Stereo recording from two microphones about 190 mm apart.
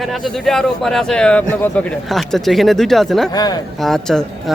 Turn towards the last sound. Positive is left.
turn(degrees=0)  # may be behind; listen again after turning